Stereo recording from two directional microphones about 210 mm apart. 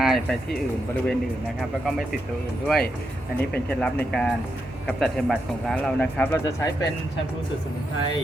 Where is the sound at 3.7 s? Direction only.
5° left (ahead or behind).